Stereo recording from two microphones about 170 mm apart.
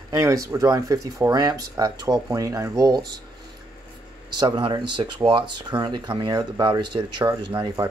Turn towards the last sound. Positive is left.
turn(degrees=-25)  # may be behind; listen again after turning